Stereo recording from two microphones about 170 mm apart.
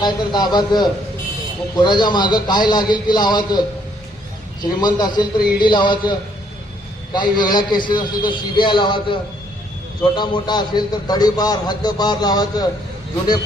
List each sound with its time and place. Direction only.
0.0 s a man's voice: 25° left (ahead or behind)
4.6 s a man's voice: 25° left (ahead or behind)